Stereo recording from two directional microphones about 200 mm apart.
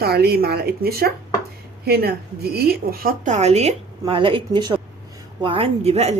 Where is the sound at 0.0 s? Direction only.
50° right (ahead or behind).